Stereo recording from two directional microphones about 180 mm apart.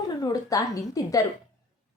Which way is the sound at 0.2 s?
20° left (ahead or behind).